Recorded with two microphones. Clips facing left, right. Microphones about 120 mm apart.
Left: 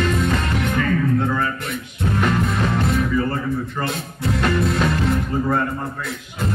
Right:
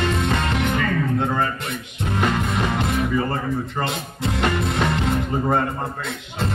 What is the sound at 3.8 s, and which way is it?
Speech, 20° right (ahead or behind).